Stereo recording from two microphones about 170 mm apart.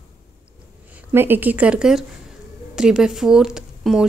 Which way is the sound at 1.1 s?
10° right (ahead or behind).